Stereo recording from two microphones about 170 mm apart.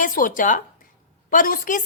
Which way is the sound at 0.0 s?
55° left (ahead or behind).